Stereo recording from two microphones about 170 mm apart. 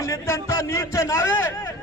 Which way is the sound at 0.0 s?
15° left (ahead or behind).